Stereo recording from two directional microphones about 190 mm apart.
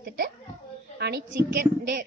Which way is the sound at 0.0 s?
55° right (ahead or behind).